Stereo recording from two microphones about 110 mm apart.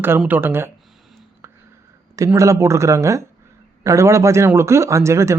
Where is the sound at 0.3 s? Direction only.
20° right (ahead or behind).